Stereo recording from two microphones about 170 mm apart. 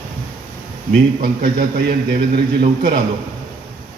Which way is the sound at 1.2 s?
60° right (ahead or behind).